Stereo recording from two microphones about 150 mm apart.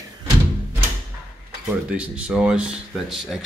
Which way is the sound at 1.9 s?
10° right (ahead or behind).